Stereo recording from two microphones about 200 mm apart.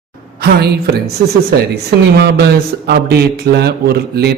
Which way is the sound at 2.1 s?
55° right (ahead or behind).